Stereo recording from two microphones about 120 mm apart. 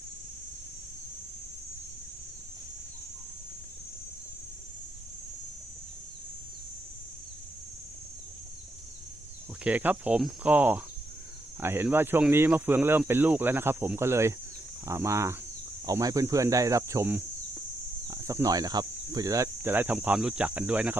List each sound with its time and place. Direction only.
9.6 s speech: 10° right (ahead or behind)